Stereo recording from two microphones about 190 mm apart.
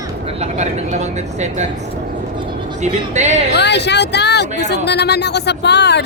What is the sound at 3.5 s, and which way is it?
Speech, 65° left (ahead or behind).